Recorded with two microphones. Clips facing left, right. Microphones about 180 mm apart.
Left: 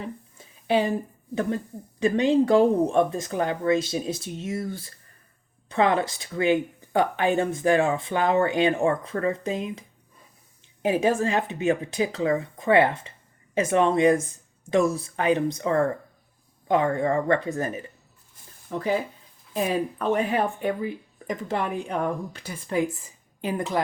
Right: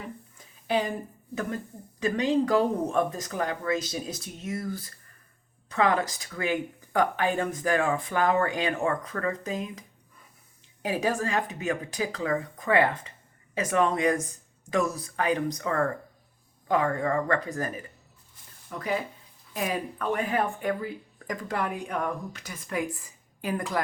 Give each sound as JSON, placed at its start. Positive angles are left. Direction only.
{"t": 0.3, "sound": "a sound", "side_deg": 25}
{"t": 2.0, "sound": "a woman's voice", "side_deg": 30}
{"t": 10.8, "sound": "a woman's voice", "side_deg": 25}